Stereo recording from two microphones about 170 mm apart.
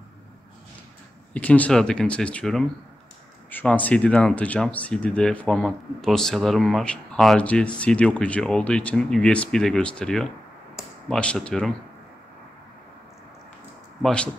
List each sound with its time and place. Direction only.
1.3 s speech: 10° left (ahead or behind)
14.0 s speech: 5° left (ahead or behind)